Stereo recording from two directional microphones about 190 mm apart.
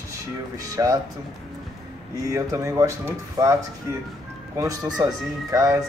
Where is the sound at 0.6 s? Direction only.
20° right (ahead or behind).